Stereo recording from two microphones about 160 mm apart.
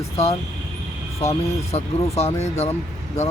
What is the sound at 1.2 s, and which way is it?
Speech, 40° left (ahead or behind).